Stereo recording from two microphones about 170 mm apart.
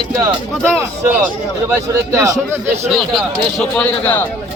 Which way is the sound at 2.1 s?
20° right (ahead or behind).